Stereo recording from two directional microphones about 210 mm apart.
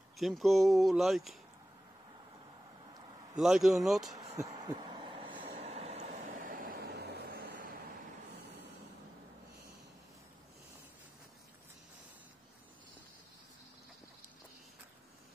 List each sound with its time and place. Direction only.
0.2 s speech: centre (ahead or behind)
3.3 s speech: centre (ahead or behind)
4.6 s vehicle: 20° right (ahead or behind); by 7.4 s 50° right (ahead or behind)